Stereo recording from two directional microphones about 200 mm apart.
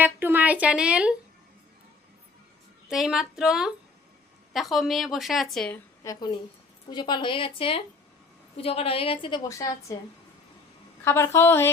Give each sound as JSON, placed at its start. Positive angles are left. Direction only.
{"t": 0.0, "sound": "a woman's voice", "side_deg": -10}
{"t": 2.9, "sound": "a woman's voice", "side_deg": 0}
{"t": 6.0, "sound": "a woman's voice", "side_deg": 20}
{"t": 11.0, "sound": "a woman's voice", "side_deg": 10}